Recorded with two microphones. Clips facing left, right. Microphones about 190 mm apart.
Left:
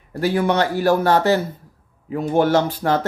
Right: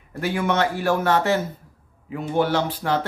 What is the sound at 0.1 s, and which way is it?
Speech, 35° left (ahead or behind).